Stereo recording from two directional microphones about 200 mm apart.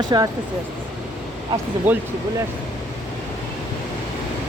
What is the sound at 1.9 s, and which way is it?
Speech, 10° right (ahead or behind).